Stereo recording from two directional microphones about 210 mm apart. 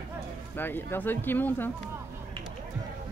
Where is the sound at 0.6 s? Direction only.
10° left (ahead or behind).